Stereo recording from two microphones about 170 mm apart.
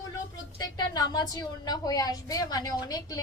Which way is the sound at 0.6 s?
25° left (ahead or behind).